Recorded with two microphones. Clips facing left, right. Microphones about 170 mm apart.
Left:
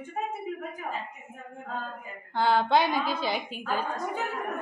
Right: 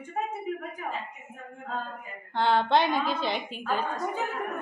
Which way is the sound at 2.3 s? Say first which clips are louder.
Even; 5° left (ahead or behind).